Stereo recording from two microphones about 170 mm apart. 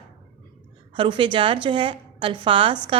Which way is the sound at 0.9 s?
30° right (ahead or behind).